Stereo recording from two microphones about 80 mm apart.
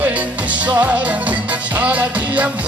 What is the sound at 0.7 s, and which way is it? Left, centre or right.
Music, centre.